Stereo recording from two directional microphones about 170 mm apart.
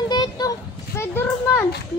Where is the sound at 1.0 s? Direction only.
15° left (ahead or behind).